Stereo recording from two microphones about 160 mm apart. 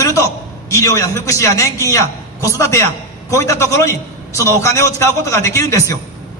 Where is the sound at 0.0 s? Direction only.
20° left (ahead or behind).